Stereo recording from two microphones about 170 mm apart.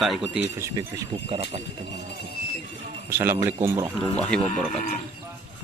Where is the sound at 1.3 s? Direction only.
35° right (ahead or behind).